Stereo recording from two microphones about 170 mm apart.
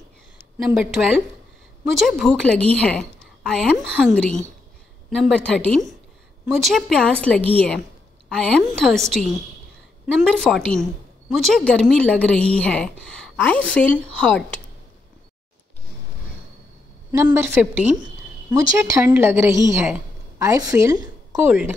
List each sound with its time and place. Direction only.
0.6 s a woman's voice: centre (ahead or behind)
17.1 s a woman's voice: 15° right (ahead or behind)
21.5 s a woman's voice: 5° right (ahead or behind)